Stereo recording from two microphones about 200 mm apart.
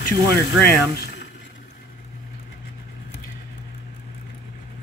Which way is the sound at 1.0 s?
55° left (ahead or behind).